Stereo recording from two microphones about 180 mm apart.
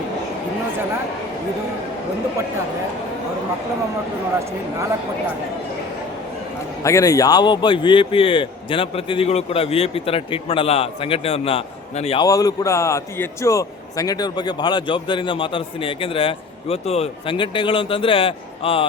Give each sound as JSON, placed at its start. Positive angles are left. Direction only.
{"t": 6.8, "sound": "a man's voice", "side_deg": 15}
{"t": 12.2, "sound": "a man's voice", "side_deg": 20}